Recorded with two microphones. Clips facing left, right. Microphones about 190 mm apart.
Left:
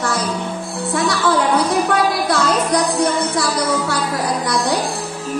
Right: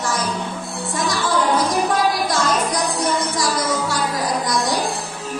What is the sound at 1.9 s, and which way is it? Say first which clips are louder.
Music: left 2 dB; 60° left (ahead or behind).